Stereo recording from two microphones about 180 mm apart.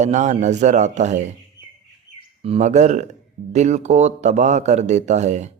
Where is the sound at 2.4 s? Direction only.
35° right (ahead or behind).